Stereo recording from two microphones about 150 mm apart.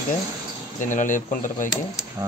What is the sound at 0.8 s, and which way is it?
Speech, 60° left (ahead or behind).